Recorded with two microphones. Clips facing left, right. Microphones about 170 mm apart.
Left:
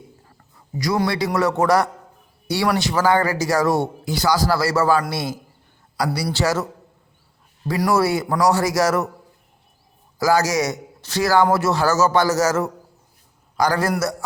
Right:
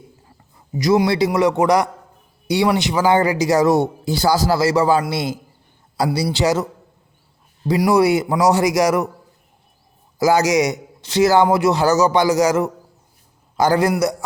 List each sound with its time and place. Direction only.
0.8 s speech: 20° right (ahead or behind)
7.7 s a man's voice: 15° right (ahead or behind)
10.2 s a man's voice: 20° right (ahead or behind)